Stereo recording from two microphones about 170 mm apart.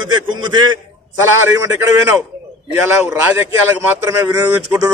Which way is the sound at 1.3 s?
15° right (ahead or behind).